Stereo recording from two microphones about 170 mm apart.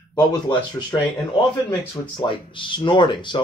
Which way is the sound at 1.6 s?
30° left (ahead or behind).